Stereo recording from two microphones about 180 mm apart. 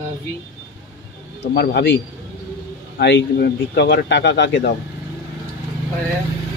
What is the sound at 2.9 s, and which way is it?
Speech, 65° left (ahead or behind).